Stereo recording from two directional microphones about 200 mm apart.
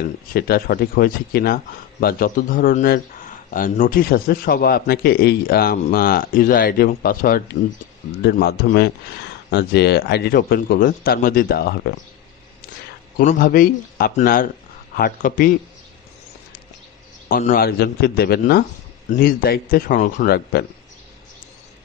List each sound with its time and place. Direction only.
0.3 s a man's voice: 50° left (ahead or behind)
13.2 s a man's voice: 40° left (ahead or behind)
17.3 s a man's voice: 45° left (ahead or behind)